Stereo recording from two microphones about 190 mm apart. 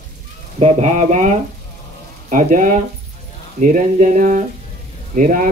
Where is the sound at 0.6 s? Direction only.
35° right (ahead or behind).